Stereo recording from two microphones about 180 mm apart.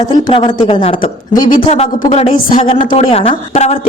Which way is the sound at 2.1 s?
35° left (ahead or behind).